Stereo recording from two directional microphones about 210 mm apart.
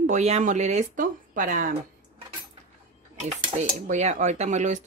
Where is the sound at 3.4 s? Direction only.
30° right (ahead or behind).